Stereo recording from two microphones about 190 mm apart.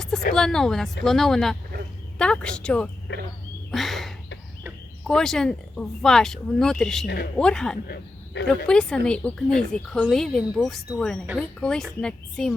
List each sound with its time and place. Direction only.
0.3 s speech: 5° left (ahead or behind)
3.7 s a sound: centre (ahead or behind)
5.0 s speech: centre (ahead or behind)
7.9 s speech: 65° left (ahead or behind)
8.4 s speech: 5° left (ahead or behind)